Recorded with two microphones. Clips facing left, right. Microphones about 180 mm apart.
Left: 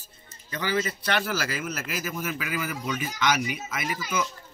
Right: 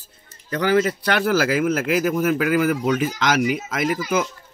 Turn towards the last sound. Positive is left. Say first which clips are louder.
# right 8 dB
turn(degrees=-55)  # may be behind; listen again after turning